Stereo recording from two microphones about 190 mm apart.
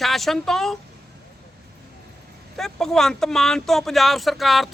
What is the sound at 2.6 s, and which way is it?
A man's voice, centre (ahead or behind).